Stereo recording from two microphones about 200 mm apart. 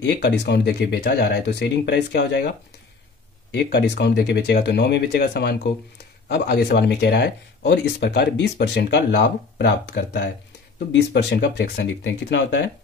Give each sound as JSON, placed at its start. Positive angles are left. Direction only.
{"t": 0.0, "sound": "speech", "side_deg": 60}
{"t": 3.5, "sound": "speech", "side_deg": 55}